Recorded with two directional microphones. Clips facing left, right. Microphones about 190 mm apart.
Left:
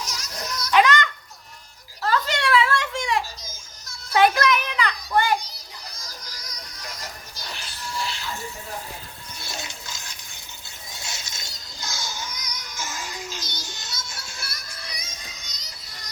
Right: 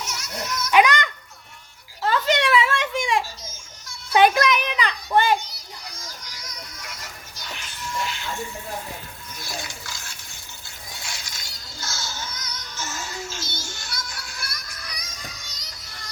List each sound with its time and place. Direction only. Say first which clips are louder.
0.0 s baby cry: right 2 dB; 35° left (ahead or behind)
0.7 s a sound: right 1 dB; 15° right (ahead or behind)
4.1 s children playing: right 1 dB; 15° right (ahead or behind)
6.0 s music: right 1 dB; 35° left (ahead or behind)
9.4 s water: right 2 dB; 25° left (ahead or behind)
11.0 s music: left 2 dB; 25° left (ahead or behind)